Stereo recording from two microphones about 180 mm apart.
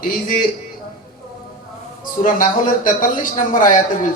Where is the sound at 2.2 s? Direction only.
50° left (ahead or behind).